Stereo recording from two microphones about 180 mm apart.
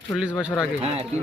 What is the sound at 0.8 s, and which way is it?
Speech, 35° right (ahead or behind).